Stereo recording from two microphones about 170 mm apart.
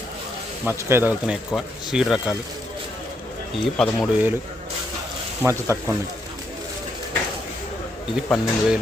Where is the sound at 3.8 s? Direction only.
5° right (ahead or behind).